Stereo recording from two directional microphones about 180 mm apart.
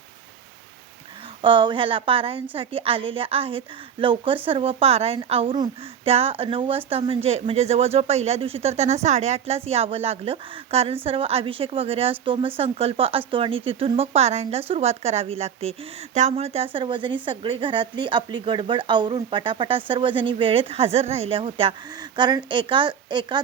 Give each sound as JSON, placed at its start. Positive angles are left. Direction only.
{"t": 1.4, "sound": "speech", "side_deg": -25}